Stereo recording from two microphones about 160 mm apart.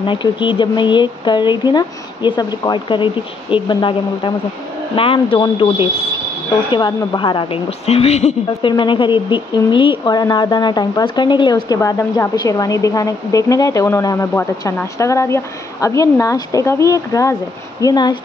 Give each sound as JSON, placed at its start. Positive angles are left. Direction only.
{"t": 0.0, "sound": "a woman's voice", "side_deg": 30}